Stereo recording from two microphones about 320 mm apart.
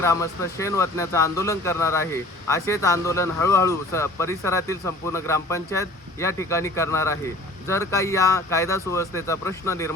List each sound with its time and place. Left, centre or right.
0.0 s speech: centre